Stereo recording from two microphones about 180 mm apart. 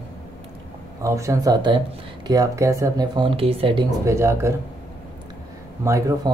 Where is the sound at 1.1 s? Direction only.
15° right (ahead or behind).